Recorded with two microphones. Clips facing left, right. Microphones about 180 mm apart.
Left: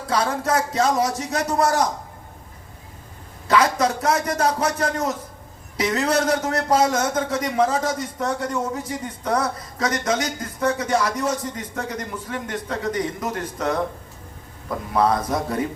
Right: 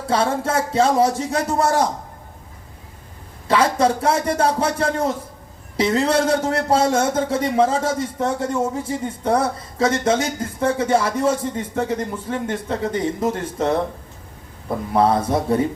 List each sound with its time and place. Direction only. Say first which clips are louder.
0.1 s a man's voice: right 2 dB; 25° right (ahead or behind)
3.5 s a man's voice: right 2 dB; 30° right (ahead or behind)
14.9 s a man's voice: right 3 dB; 25° right (ahead or behind)